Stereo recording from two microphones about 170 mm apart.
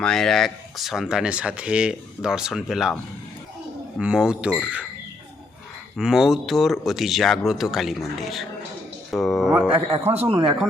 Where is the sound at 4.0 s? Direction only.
5° right (ahead or behind).